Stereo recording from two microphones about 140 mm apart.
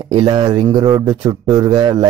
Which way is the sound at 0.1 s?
35° right (ahead or behind).